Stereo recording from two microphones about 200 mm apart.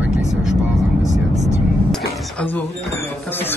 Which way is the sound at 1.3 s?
35° right (ahead or behind).